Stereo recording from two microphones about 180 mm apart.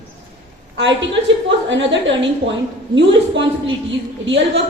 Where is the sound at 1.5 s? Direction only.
90° right.